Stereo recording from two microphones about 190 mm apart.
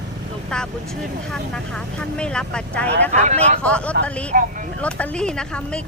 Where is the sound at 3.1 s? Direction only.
35° right (ahead or behind).